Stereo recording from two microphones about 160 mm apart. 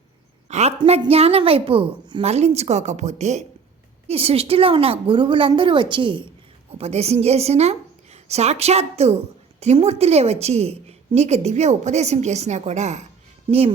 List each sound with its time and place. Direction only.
0.4 s a sound: 45° right (ahead or behind)
0.9 s a woman's voice: 40° right (ahead or behind)
6.7 s a woman's voice: 40° right (ahead or behind)